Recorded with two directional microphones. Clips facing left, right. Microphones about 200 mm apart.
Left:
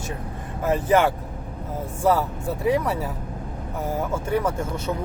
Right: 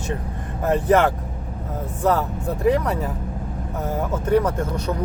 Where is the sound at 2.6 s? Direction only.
5° left (ahead or behind).